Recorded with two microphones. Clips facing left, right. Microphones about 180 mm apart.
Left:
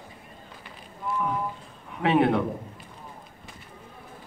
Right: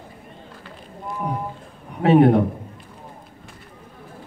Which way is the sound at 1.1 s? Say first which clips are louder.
Right 1 dB; 40° right (ahead or behind).